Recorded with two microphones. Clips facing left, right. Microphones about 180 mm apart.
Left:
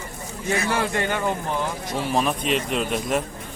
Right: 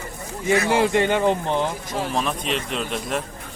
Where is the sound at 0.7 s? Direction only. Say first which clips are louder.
Right 5 dB; 20° right (ahead or behind).